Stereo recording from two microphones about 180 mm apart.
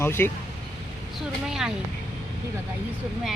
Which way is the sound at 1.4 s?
5° right (ahead or behind).